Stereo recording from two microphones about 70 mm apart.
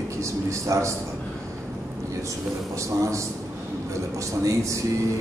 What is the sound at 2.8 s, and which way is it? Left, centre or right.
A man's voice, right.